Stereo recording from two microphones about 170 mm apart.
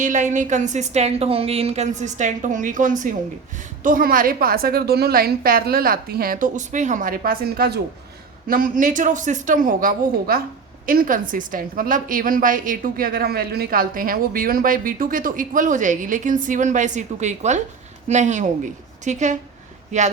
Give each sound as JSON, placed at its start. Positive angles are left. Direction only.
{"t": 0.0, "sound": "a woman's voice", "side_deg": -45}
{"t": 8.4, "sound": "a woman's voice", "side_deg": -55}